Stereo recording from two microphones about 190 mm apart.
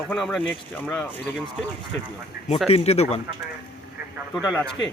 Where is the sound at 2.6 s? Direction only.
30° left (ahead or behind).